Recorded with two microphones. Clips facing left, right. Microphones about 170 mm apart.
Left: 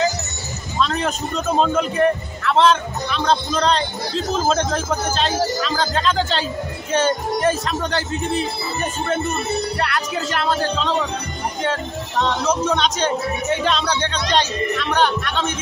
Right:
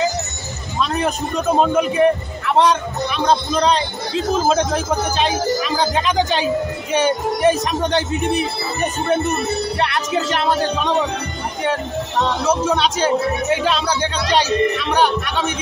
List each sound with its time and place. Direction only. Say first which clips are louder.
0.7 s a man's voice: right 1 dB; 10° right (ahead or behind)